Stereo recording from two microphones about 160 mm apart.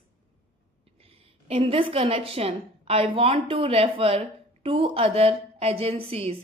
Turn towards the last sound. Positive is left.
turn(degrees=-35)  # may be behind; listen again after turning